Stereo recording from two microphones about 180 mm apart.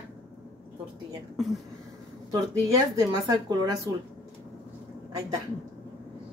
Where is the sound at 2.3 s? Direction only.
20° right (ahead or behind).